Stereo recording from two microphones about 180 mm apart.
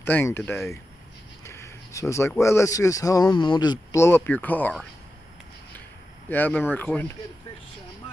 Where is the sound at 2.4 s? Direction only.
15° left (ahead or behind).